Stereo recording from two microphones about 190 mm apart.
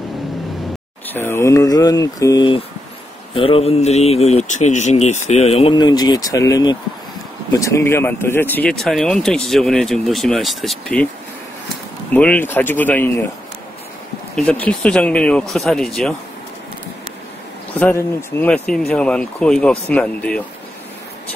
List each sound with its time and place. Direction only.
1.0 s speech: 10° left (ahead or behind)
12.1 s speech: 5° left (ahead or behind)
14.3 s speech: 5° left (ahead or behind)
17.7 s speech: 10° left (ahead or behind)